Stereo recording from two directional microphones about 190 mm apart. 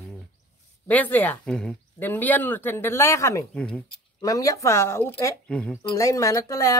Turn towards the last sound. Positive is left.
turn(degrees=15)  # may be behind; listen again after turning